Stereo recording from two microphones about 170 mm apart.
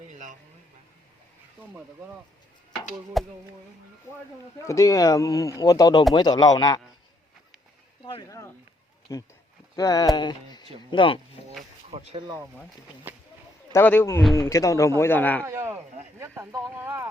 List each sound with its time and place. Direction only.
0.1 s a sound: 45° right (ahead or behind)
3.2 s chop: centre (ahead or behind)
4.6 s speech: 20° left (ahead or behind)
8.0 s speech: 25° left (ahead or behind)
9.1 s speech: 15° left (ahead or behind)
11.9 s speech: 40° right (ahead or behind)
13.1 s speech: 10° right (ahead or behind)
13.7 s speech: 10° left (ahead or behind)
15.4 s speech: 15° right (ahead or behind)